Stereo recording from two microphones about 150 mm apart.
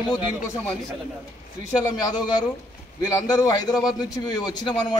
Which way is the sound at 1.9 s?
25° left (ahead or behind).